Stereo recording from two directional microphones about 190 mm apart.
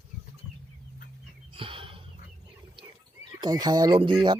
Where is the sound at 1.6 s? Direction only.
30° right (ahead or behind).